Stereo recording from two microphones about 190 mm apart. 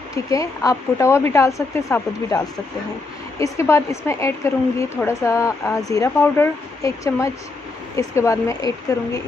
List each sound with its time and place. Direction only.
0.1 s a woman's voice: 15° left (ahead or behind)